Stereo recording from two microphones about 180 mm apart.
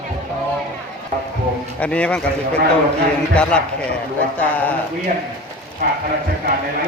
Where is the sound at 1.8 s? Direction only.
5° left (ahead or behind).